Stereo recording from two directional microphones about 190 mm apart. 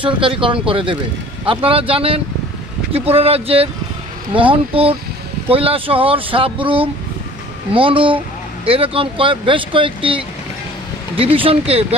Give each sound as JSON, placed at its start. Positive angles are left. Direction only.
{"t": 0.0, "sound": "speech", "side_deg": -25}